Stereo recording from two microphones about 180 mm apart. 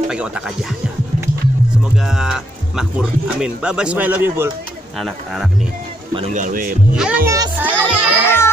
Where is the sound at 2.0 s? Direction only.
5° right (ahead or behind).